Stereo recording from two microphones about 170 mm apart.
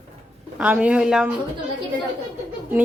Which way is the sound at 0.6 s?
5° right (ahead or behind).